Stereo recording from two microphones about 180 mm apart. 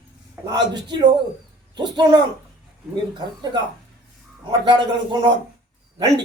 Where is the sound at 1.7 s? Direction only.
25° right (ahead or behind).